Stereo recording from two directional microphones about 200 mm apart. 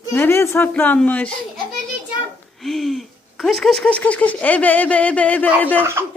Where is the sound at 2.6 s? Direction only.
Centre (ahead or behind).